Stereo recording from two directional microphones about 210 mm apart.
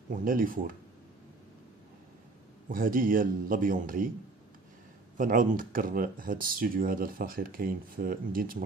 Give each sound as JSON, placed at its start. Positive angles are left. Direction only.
{"t": 0.1, "sound": "a man's voice", "side_deg": -40}
{"t": 2.7, "sound": "a man's voice", "side_deg": -40}
{"t": 5.1, "sound": "speech", "side_deg": -40}